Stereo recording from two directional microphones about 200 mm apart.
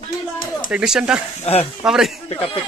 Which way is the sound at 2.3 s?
25° left (ahead or behind).